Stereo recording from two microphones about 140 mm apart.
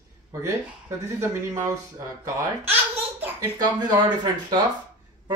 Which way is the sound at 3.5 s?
30° right (ahead or behind).